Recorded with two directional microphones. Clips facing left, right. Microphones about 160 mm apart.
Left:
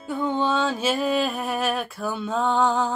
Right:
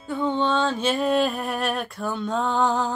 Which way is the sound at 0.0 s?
5° left (ahead or behind).